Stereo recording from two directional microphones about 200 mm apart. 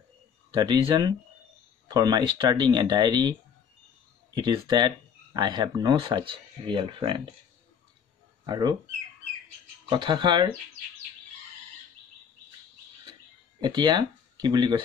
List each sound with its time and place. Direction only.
0.6 s speech: 20° right (ahead or behind)
8.5 s speech: 20° right (ahead or behind)
9.8 s speech: 25° right (ahead or behind)
13.6 s speech: 20° right (ahead or behind)